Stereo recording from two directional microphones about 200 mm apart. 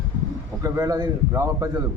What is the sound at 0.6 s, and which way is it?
A man's voice, 20° right (ahead or behind).